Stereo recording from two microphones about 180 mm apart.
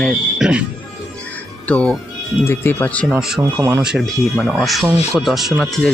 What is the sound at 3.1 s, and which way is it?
Speech, centre (ahead or behind).